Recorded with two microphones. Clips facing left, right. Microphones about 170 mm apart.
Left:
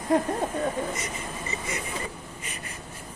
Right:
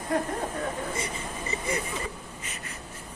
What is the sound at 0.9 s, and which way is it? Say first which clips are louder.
Speech: right 1 dB; 30° right (ahead or behind).